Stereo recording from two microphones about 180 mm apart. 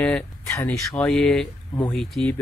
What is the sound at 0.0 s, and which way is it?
Speech, 10° left (ahead or behind).